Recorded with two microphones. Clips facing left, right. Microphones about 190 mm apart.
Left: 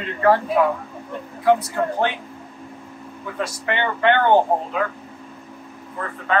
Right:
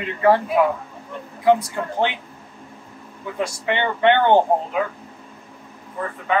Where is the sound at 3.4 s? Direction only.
20° right (ahead or behind).